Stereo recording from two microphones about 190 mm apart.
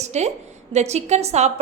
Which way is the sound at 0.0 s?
35° right (ahead or behind).